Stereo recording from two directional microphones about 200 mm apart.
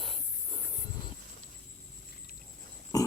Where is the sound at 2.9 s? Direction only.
20° left (ahead or behind).